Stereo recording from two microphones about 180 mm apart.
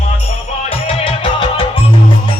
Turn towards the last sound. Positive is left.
turn(degrees=30)  # may be behind; listen again after turning